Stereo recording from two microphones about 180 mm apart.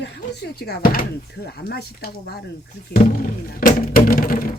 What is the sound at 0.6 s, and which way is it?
Speech, 65° left (ahead or behind).